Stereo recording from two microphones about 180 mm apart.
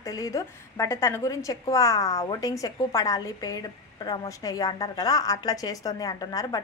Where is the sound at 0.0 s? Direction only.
20° left (ahead or behind).